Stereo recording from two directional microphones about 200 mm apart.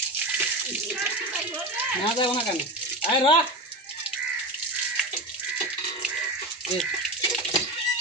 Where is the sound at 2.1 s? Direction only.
25° left (ahead or behind).